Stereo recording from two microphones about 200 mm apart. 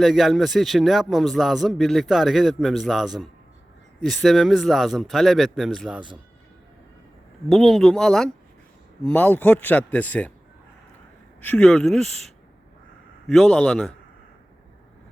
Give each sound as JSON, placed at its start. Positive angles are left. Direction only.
{"t": 0.0, "sound": "a man's voice", "side_deg": 0}
{"t": 7.5, "sound": "a man's voice", "side_deg": 0}
{"t": 11.3, "sound": "a man's voice", "side_deg": 5}